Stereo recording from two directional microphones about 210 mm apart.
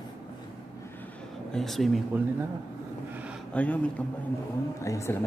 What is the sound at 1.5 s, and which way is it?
Speech, centre (ahead or behind).